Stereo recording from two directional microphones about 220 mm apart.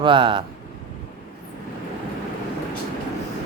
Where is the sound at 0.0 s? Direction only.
20° right (ahead or behind).